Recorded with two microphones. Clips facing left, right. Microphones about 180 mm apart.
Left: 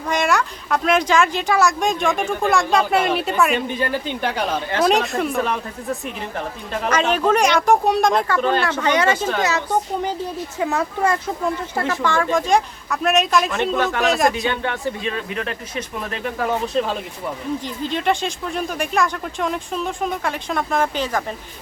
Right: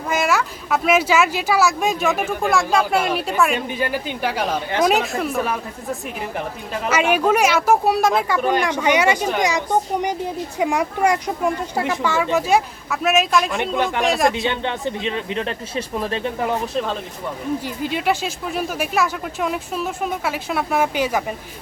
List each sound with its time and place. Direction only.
0.1 s speech: 5° right (ahead or behind)
3.8 s speech: 10° right (ahead or behind)
13.7 s speech: 15° right (ahead or behind)
14.0 s speech: centre (ahead or behind)
14.4 s speech: 20° right (ahead or behind)
16.7 s speech: 5° left (ahead or behind)
17.8 s speech: 5° right (ahead or behind)